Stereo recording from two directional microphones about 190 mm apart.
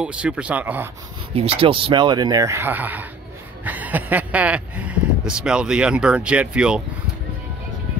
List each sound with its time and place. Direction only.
0.0 s speech: 5° right (ahead or behind)
1.3 s speech: 30° right (ahead or behind); by 6.8 s 5° right (ahead or behind)